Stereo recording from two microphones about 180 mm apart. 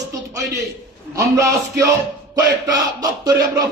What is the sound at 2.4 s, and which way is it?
Music, 20° right (ahead or behind).